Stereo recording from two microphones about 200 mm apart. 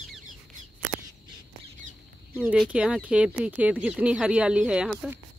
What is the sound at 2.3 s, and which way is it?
Speech, 10° right (ahead or behind).